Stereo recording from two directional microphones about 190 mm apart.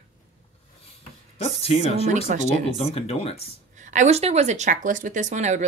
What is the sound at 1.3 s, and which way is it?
Speech, 30° left (ahead or behind).